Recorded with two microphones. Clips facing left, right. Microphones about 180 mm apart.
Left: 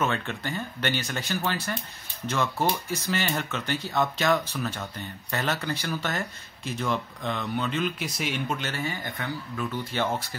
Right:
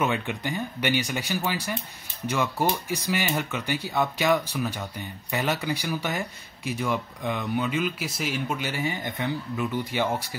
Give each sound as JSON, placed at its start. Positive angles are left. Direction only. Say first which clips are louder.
{"t": 0.0, "sound": "speech", "louder": "right 2 dB", "side_deg": -15}